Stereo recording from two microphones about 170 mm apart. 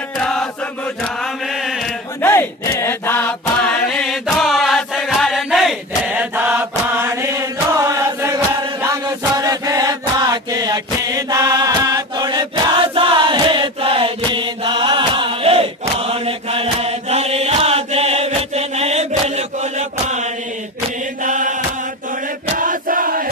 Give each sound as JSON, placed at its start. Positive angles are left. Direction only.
{"t": 0.2, "sound": "chant", "side_deg": 5}
{"t": 2.2, "sound": "battle cry", "side_deg": 15}
{"t": 2.7, "sound": "chant", "side_deg": 15}
{"t": 22.5, "sound": "crowd", "side_deg": -55}